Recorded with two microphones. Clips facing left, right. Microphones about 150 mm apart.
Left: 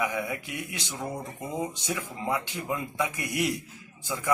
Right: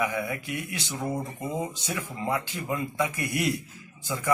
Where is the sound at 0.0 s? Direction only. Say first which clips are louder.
Right 1 dB; 15° left (ahead or behind).